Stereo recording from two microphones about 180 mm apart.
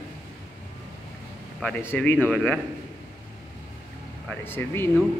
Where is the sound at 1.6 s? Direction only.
10° left (ahead or behind).